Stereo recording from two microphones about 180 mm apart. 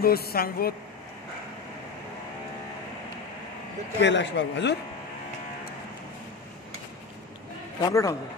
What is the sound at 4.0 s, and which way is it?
Speech, 80° left.